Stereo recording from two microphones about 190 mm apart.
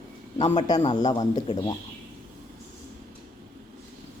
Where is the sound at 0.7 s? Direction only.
20° left (ahead or behind).